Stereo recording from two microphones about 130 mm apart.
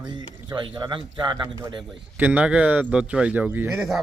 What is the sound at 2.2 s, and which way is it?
Speech, 10° right (ahead or behind).